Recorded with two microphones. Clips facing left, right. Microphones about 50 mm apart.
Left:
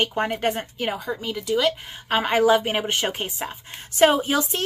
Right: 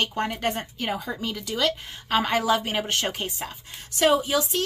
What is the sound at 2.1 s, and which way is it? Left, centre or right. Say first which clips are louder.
A woman's voice: left 4 dB; left.